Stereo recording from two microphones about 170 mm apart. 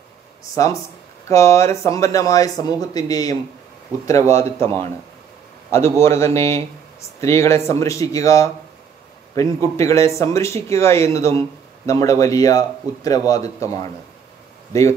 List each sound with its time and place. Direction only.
1.3 s speech: 15° left (ahead or behind)